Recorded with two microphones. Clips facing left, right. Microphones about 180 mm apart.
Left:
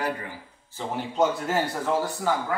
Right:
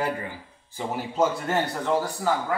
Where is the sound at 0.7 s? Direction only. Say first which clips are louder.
Even; 5° right (ahead or behind).